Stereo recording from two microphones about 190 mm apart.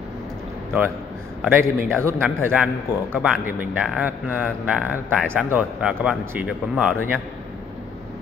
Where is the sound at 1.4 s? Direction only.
10° right (ahead or behind).